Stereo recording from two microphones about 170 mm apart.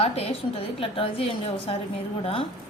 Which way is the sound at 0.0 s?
35° left (ahead or behind).